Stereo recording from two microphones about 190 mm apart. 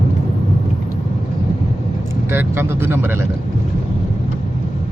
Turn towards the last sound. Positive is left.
turn(degrees=-10)  # may be behind; listen again after turning